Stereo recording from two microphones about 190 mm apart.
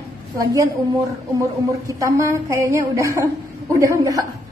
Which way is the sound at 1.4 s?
15° right (ahead or behind).